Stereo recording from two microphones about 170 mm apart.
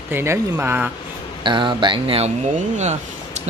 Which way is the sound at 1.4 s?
30° right (ahead or behind).